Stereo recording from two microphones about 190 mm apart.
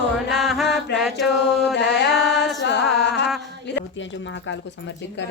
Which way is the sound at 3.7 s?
65° left (ahead or behind).